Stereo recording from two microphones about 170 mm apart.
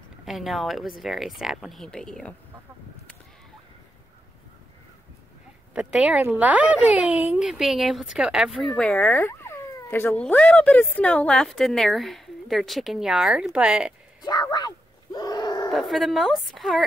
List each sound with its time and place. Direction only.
0.2 s speech: centre (ahead or behind)
5.8 s speech: 5° right (ahead or behind)
14.2 s speech: 25° left (ahead or behind)
15.1 s groan: 25° left (ahead or behind)
15.7 s speech: centre (ahead or behind)